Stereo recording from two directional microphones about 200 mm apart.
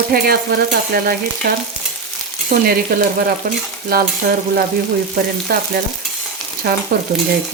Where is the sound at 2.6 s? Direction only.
50° right (ahead or behind).